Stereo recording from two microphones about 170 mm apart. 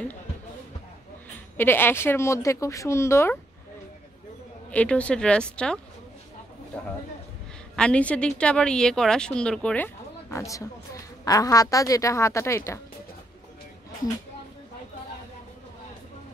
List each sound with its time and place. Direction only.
1.6 s speech: 10° left (ahead or behind)
4.6 s speech: 10° left (ahead or behind)
7.7 s speech: 5° left (ahead or behind)